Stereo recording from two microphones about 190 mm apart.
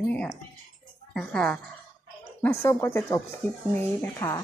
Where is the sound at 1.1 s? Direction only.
5° left (ahead or behind).